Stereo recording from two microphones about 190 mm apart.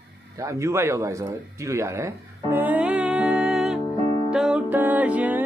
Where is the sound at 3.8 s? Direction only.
20° left (ahead or behind).